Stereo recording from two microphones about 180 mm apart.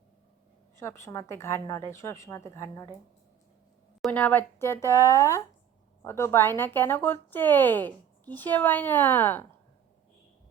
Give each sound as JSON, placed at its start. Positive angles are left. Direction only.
{"t": 0.8, "sound": "speech", "side_deg": 15}
{"t": 4.0, "sound": "speech", "side_deg": 5}